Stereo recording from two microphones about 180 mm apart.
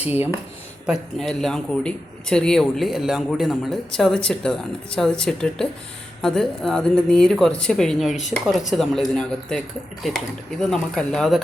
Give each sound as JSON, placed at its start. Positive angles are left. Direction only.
{"t": 0.9, "sound": "a man's voice", "side_deg": 0}
{"t": 10.6, "sound": "a man's voice", "side_deg": 5}